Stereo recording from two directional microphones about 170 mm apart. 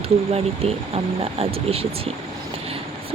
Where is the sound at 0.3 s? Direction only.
35° right (ahead or behind).